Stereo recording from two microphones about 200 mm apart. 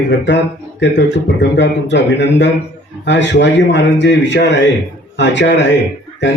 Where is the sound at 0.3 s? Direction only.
60° left (ahead or behind).